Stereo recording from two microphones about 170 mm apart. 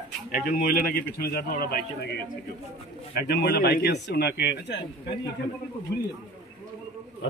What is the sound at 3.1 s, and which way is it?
A man's voice, 70° left (ahead or behind).